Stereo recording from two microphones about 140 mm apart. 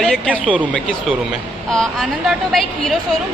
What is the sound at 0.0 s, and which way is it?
Speech, 5° left (ahead or behind).